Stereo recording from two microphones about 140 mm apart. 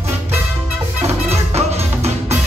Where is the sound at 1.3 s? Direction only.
50° right (ahead or behind).